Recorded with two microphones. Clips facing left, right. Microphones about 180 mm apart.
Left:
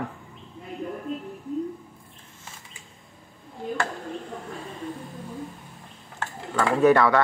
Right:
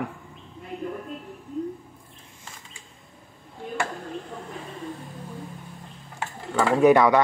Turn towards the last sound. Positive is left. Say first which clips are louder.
# right 2 dB
turn(degrees=-15)  # may be behind; listen again after turning